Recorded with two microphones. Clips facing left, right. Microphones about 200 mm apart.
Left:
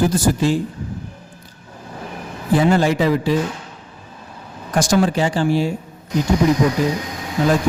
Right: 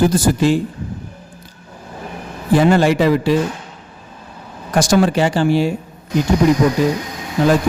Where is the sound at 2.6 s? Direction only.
70° right (ahead or behind).